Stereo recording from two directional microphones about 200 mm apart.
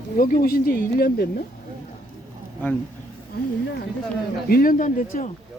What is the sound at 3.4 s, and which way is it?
Speech, 50° left (ahead or behind).